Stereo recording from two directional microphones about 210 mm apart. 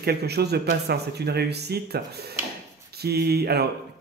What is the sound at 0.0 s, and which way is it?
Speech, 50° right (ahead or behind).